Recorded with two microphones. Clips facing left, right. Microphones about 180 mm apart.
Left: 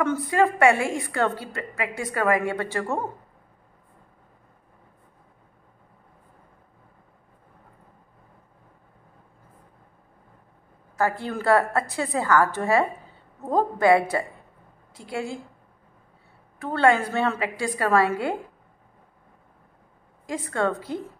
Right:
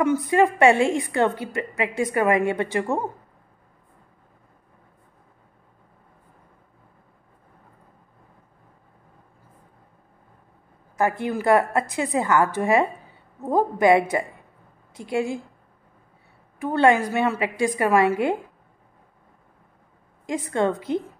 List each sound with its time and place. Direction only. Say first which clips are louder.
0.0 s a woman's voice: right 3 dB; 15° right (ahead or behind)
11.0 s a woman's voice: right 2 dB; 20° right (ahead or behind)
16.5 s a woman's voice: right 2 dB; 15° right (ahead or behind)
20.2 s a woman's voice: right 3 dB; 20° right (ahead or behind)